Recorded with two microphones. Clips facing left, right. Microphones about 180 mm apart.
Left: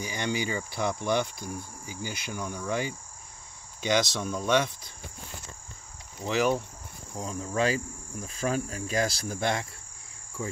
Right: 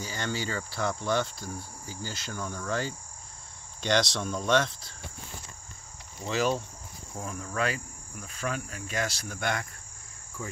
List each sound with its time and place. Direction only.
0.0 s cricket: 15° left (ahead or behind)
6.1 s cricket: 15° left (ahead or behind)
10.4 s insect: 25° left (ahead or behind)